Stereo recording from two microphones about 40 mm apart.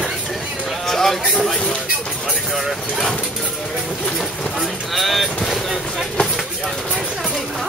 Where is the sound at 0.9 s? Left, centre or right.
Centre.